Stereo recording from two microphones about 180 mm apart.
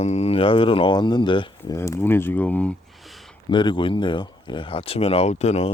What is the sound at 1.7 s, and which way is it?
Speech, 15° left (ahead or behind).